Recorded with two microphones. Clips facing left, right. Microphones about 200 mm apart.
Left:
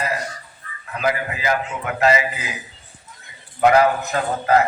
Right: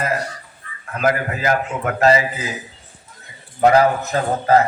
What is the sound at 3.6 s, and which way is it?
A man's voice, 35° right (ahead or behind).